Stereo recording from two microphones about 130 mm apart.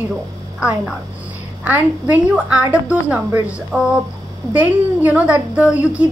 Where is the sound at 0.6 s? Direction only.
10° right (ahead or behind).